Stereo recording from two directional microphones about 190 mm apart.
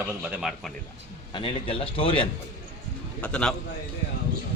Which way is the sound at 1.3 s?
25° left (ahead or behind).